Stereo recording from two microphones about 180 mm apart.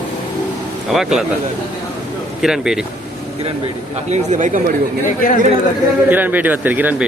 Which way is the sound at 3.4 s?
35° right (ahead or behind).